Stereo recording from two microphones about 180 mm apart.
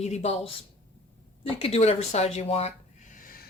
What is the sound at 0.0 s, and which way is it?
Speech, 35° left (ahead or behind).